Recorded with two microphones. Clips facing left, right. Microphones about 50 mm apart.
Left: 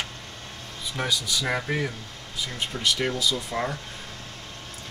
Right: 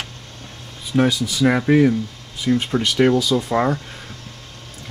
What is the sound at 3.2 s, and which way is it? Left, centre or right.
Speech, right.